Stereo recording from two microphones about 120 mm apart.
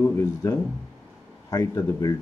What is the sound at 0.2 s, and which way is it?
Speech, 20° left (ahead or behind).